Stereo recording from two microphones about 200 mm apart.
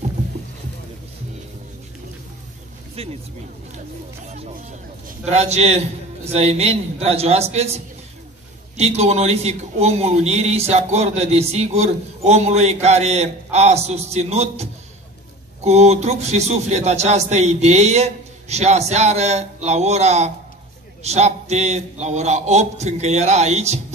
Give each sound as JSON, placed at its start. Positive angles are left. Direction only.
{"t": 3.0, "sound": "speech", "side_deg": -30}
{"t": 4.3, "sound": "a man's voice", "side_deg": -30}